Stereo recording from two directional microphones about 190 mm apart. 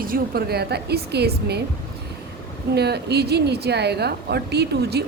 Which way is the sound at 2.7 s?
60° right (ahead or behind).